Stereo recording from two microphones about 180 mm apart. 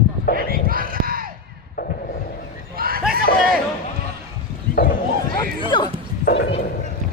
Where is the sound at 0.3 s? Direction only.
60° left (ahead or behind).